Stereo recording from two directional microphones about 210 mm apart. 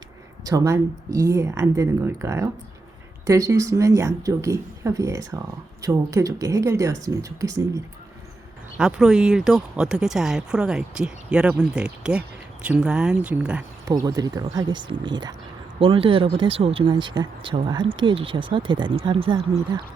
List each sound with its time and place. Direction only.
0.4 s a woman's voice: 15° right (ahead or behind)
8.8 s speech: 5° right (ahead or behind)
13.8 s speech: 15° right (ahead or behind)